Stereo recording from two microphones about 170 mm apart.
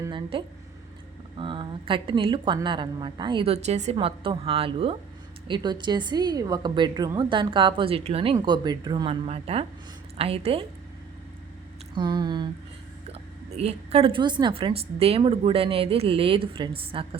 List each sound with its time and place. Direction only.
0.1 s a woman's voice: 30° right (ahead or behind)
3.9 s a woman's voice: 30° right (ahead or behind)
9.2 s a woman's voice: 35° right (ahead or behind)
11.9 s a woman's voice: 25° right (ahead or behind)
13.1 s a woman's voice: 35° right (ahead or behind)